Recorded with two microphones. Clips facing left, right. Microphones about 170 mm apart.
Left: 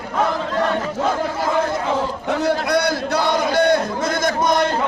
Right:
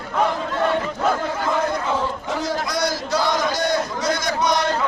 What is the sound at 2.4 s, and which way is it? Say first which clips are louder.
Speech: left 5 dB; 60° left (ahead or behind).